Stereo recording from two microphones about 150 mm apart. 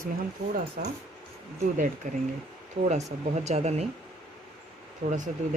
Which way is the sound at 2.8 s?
50° right (ahead or behind).